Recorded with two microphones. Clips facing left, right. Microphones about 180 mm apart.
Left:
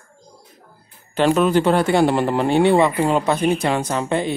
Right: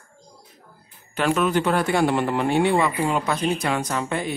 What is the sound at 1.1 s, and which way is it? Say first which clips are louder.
Speech: left 5 dB; 30° left (ahead or behind).